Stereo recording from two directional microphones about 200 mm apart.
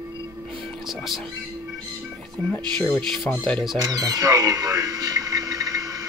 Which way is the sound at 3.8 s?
20° right (ahead or behind).